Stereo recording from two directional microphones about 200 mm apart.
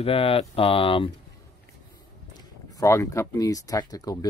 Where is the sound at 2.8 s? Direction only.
15° left (ahead or behind).